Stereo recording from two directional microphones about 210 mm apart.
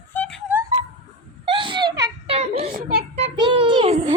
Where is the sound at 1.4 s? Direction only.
25° right (ahead or behind).